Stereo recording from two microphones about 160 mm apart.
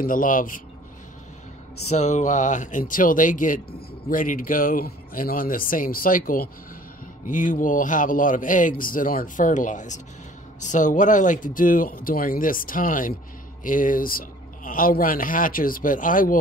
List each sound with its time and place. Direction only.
0.0 s speech: 60° left (ahead or behind)
1.9 s speech: 45° left (ahead or behind)